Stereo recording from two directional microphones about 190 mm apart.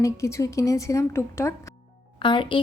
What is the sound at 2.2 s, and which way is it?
Speech, 25° left (ahead or behind).